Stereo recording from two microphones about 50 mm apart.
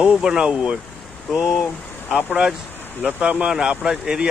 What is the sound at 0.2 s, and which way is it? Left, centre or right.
Speech, centre.